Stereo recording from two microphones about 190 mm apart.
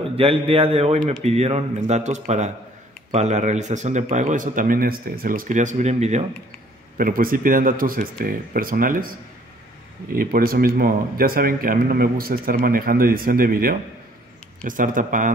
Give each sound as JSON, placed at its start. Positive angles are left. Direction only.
{"t": 0.1, "sound": "a man's voice", "side_deg": -30}
{"t": 7.0, "sound": "speech", "side_deg": -50}
{"t": 10.1, "sound": "speech", "side_deg": -50}